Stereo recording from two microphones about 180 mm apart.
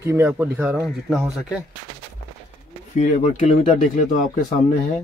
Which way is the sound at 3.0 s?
40° left (ahead or behind).